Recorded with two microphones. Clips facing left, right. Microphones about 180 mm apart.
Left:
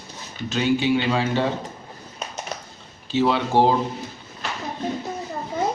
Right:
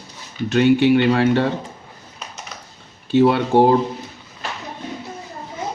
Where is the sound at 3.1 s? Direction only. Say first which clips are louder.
Right 5 dB; 55° right (ahead or behind).